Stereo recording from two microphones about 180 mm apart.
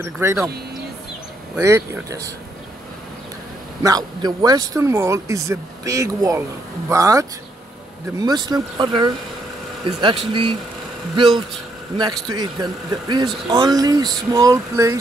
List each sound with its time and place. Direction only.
0.0 s speech: 15° right (ahead or behind)
1.6 s speech: 15° right (ahead or behind)
3.8 s speech: 20° right (ahead or behind)